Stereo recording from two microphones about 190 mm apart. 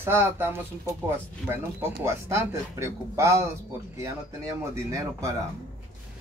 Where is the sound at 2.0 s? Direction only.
15° right (ahead or behind).